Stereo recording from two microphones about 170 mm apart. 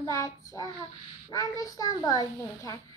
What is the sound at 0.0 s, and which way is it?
A child's voice, 20° left (ahead or behind).